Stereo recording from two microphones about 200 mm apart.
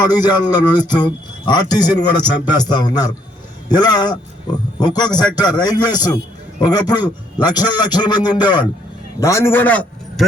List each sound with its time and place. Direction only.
0.0 s a man's voice: 20° left (ahead or behind)